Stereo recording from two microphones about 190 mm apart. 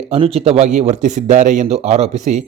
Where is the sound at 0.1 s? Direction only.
30° right (ahead or behind).